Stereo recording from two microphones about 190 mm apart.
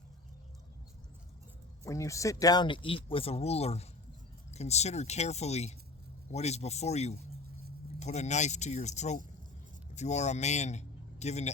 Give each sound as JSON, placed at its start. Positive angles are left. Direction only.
{"t": 1.8, "sound": "speech", "side_deg": 15}